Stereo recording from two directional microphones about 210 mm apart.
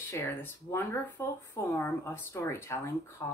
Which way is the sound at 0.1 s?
15° left (ahead or behind).